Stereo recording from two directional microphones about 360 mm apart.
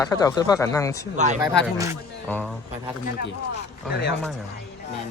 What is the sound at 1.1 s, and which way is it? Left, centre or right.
Speech, centre.